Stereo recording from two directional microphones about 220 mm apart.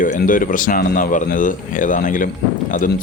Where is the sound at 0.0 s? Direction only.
40° left (ahead or behind).